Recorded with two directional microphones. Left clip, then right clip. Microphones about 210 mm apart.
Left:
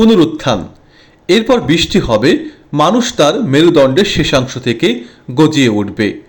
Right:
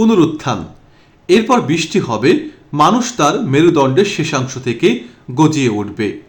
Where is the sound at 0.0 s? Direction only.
15° left (ahead or behind).